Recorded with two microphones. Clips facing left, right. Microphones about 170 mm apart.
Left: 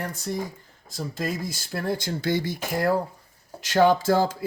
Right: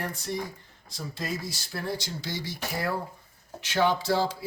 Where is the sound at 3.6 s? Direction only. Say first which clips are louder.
Left 6 dB; 45° left (ahead or behind).